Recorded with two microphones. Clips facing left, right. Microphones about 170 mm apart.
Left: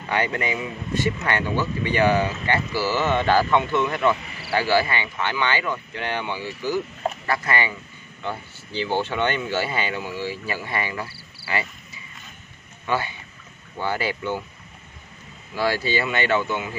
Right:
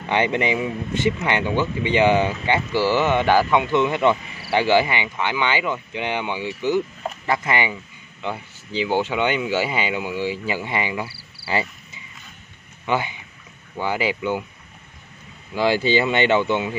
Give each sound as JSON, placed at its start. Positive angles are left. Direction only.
{"t": 0.1, "sound": "speech", "side_deg": -20}
{"t": 11.4, "sound": "cricket", "side_deg": -25}
{"t": 12.8, "sound": "speech", "side_deg": -15}
{"t": 15.5, "sound": "speech", "side_deg": -20}